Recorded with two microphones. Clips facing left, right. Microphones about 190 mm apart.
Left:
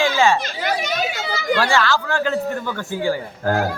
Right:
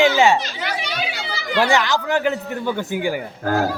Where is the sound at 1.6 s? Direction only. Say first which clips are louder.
Right 4 dB; 20° right (ahead or behind).